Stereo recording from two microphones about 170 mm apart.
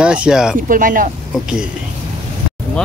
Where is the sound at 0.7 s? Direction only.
55° right (ahead or behind).